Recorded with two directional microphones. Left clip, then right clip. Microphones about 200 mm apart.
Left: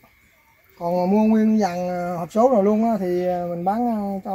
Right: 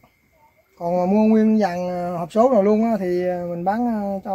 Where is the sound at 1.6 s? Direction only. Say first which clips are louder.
Right 1 dB; 10° left (ahead or behind).